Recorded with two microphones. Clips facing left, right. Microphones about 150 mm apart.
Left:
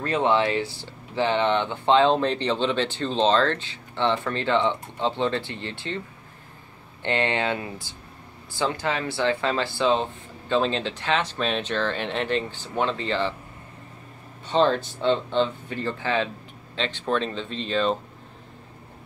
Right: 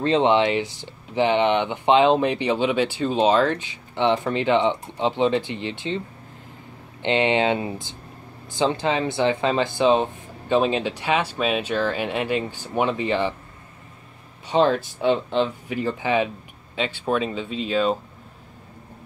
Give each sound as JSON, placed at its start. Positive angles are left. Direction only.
{"t": 0.0, "sound": "speech", "side_deg": -20}
{"t": 14.5, "sound": "speech", "side_deg": -10}